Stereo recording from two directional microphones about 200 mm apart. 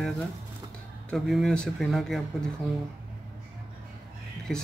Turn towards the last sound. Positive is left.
turn(degrees=0)  # may be behind; listen again after turning